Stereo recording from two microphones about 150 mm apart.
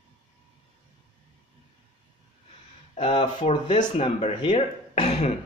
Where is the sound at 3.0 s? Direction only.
35° left (ahead or behind).